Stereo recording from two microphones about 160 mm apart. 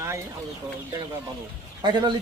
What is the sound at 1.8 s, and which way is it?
Speech, 30° right (ahead or behind).